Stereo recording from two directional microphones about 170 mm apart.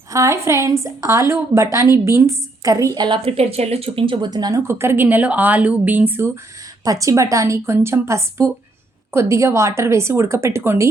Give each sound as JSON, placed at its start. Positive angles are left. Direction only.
{"t": 0.1, "sound": "a woman's voice", "side_deg": -15}